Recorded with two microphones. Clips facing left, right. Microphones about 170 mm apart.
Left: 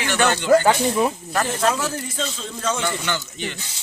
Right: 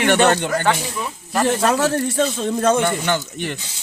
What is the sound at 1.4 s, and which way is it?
A man's voice, 75° right (ahead or behind).